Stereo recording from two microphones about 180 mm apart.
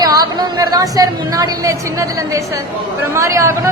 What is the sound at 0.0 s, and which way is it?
A woman's voice, 20° right (ahead or behind).